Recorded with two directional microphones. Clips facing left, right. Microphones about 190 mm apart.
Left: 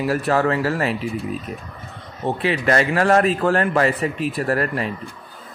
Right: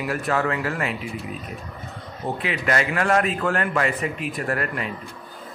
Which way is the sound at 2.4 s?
35° left (ahead or behind).